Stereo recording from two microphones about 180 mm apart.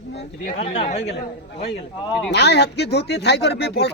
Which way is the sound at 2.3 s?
70° left (ahead or behind).